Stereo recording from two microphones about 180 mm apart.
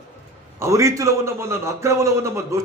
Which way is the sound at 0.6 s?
15° right (ahead or behind).